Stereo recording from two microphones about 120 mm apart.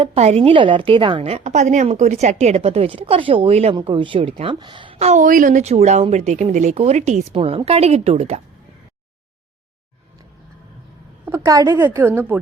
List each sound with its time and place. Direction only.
0.2 s a woman's voice: 65° right (ahead or behind)
3.8 s a woman's voice: 45° right (ahead or behind)
4.9 s a woman's voice: 75° right (ahead or behind)
7.3 s a woman's voice: 55° right (ahead or behind)
11.3 s a woman's voice: 25° right (ahead or behind)
11.8 s a woman's voice: 20° right (ahead or behind)